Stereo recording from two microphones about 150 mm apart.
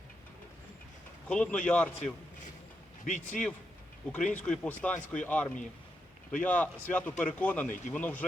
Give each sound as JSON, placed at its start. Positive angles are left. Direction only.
{"t": 1.3, "sound": "speech", "side_deg": 5}
{"t": 3.0, "sound": "speech", "side_deg": 55}
{"t": 4.1, "sound": "speech", "side_deg": 10}